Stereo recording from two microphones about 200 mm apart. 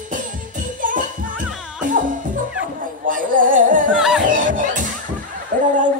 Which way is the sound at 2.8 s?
40° right (ahead or behind).